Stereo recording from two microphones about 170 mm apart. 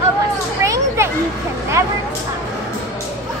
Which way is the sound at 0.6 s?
15° right (ahead or behind).